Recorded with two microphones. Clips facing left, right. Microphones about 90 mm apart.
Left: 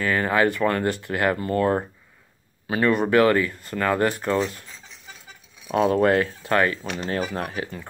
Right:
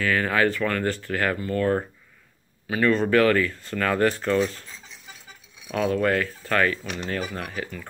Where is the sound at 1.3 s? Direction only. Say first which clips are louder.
Left 1 dB; 35° left (ahead or behind).